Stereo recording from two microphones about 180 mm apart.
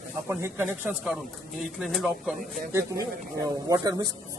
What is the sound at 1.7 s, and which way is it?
Speech, centre (ahead or behind).